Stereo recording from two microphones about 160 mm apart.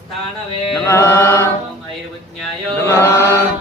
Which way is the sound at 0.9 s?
15° left (ahead or behind).